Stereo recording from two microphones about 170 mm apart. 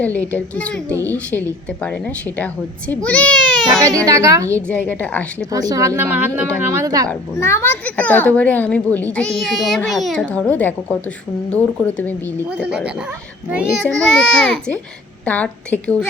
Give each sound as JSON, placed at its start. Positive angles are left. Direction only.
{"t": 0.0, "sound": "a child's voice", "side_deg": 10}
{"t": 3.8, "sound": "a woman's voice", "side_deg": -20}
{"t": 4.5, "sound": "a child's voice", "side_deg": 10}
{"t": 5.5, "sound": "a woman's voice", "side_deg": -20}
{"t": 7.1, "sound": "a child's voice", "side_deg": 15}
{"t": 13.5, "sound": "a child's voice", "side_deg": -5}